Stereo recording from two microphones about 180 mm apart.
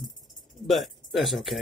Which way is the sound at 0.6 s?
Centre (ahead or behind).